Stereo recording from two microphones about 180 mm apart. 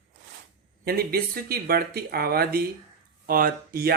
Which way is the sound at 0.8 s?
60° right (ahead or behind).